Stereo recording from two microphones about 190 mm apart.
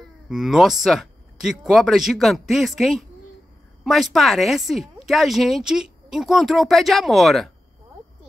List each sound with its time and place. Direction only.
0.3 s speech: centre (ahead or behind)